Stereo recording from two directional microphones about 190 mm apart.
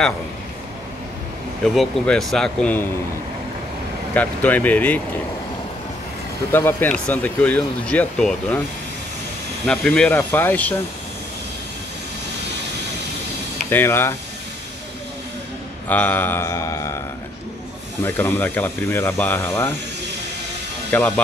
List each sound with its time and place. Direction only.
1.6 s speech: centre (ahead or behind)
4.1 s speech: 10° left (ahead or behind)
6.5 s speech: 10° left (ahead or behind)
9.7 s speech: 5° left (ahead or behind)
13.7 s speech: 10° left (ahead or behind)
15.9 s speech: 10° left (ahead or behind)
18.0 s speech: 10° left (ahead or behind)
20.9 s speech: 10° left (ahead or behind)